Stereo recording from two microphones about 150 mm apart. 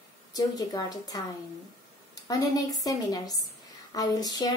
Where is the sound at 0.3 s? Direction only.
25° left (ahead or behind).